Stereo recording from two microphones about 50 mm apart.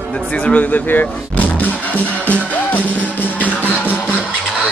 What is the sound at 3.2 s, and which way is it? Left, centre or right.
Music, left.